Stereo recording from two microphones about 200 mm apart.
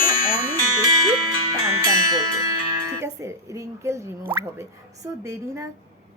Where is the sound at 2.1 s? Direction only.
15° right (ahead or behind).